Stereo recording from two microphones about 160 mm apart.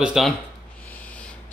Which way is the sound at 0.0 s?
Centre (ahead or behind).